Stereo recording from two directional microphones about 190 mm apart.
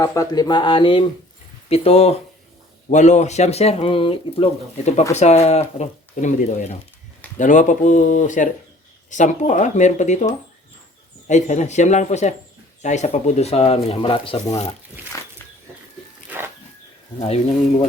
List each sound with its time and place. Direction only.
0.0 s speech: 20° left (ahead or behind)
17.2 s speech: 30° left (ahead or behind)